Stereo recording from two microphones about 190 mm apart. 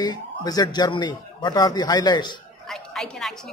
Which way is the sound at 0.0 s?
20° left (ahead or behind).